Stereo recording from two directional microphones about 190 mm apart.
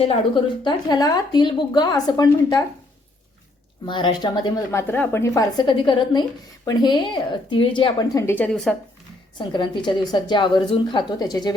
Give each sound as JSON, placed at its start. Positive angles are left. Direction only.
{"t": 0.0, "sound": "speech", "side_deg": 30}
{"t": 3.8, "sound": "speech", "side_deg": 25}
{"t": 9.4, "sound": "speech", "side_deg": 25}